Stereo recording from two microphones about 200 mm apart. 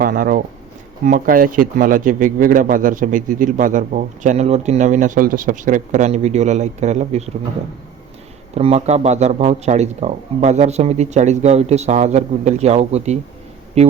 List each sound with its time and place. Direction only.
0.0 s a man's voice: 45° right (ahead or behind)
8.5 s a man's voice: 30° right (ahead or behind)